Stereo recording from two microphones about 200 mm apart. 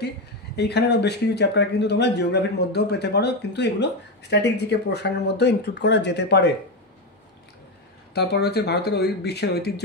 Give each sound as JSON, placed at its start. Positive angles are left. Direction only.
{"t": 0.6, "sound": "speech", "side_deg": 55}
{"t": 8.1, "sound": "speech", "side_deg": 55}